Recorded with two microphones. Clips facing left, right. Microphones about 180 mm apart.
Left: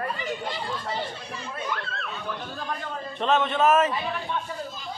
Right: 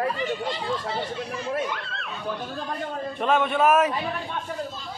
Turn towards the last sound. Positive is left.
turn(degrees=-10)  # may be behind; listen again after turning